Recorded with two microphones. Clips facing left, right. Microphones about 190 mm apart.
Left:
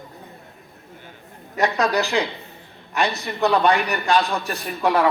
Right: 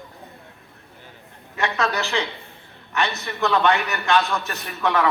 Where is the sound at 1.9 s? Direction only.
35° left (ahead or behind).